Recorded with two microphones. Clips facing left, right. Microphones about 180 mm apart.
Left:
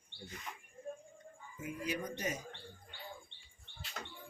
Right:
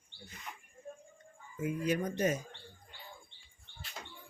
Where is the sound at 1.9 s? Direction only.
50° right (ahead or behind).